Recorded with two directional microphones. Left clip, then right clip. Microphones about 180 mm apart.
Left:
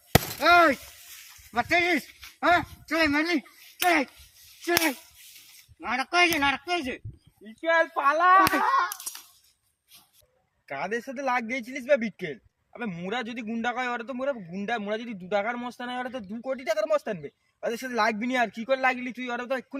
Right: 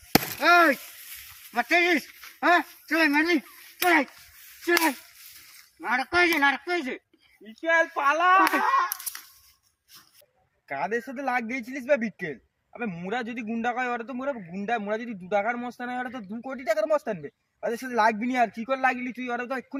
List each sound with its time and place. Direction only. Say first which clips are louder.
0.3 s a sound: even; centre (ahead or behind)
1.5 s a man's voice: right 1 dB; centre (ahead or behind)
3.8 s a child's voice: right 1 dB; 25° left (ahead or behind)
7.6 s a child's voice: even; 20° right (ahead or behind)
10.7 s a man's voice: right 2 dB; 10° left (ahead or behind)